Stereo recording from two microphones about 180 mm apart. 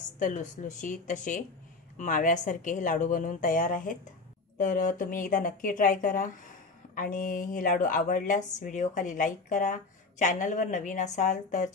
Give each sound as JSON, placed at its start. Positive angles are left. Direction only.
{"t": 0.2, "sound": "speech", "side_deg": 45}